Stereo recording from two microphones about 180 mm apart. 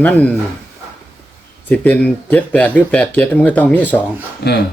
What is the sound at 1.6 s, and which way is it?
A man's voice, 10° left (ahead or behind).